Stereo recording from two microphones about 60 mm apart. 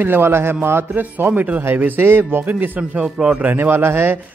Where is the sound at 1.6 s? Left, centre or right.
Right.